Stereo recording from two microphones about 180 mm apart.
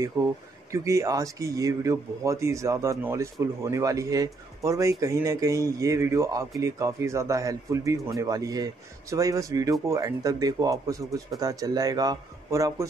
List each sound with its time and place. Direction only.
0.0 s speech: 20° right (ahead or behind)